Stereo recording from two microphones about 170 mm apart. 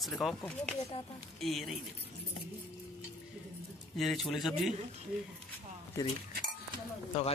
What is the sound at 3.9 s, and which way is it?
Speech, centre (ahead or behind).